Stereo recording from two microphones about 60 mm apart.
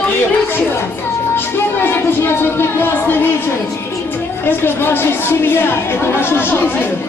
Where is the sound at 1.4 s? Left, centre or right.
Left.